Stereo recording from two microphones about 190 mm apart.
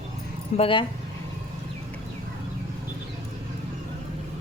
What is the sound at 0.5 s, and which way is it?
Speech, 30° left (ahead or behind).